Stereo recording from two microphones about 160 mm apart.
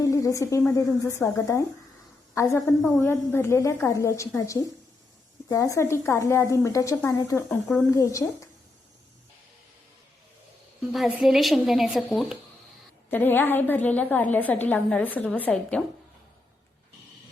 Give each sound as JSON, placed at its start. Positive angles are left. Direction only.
{"t": 0.0, "sound": "a sound", "side_deg": 20}
{"t": 0.7, "sound": "a woman's voice", "side_deg": 15}
{"t": 5.5, "sound": "a woman's voice", "side_deg": 20}
{"t": 10.9, "sound": "a woman's voice", "side_deg": 0}
{"t": 13.1, "sound": "a woman's voice", "side_deg": 10}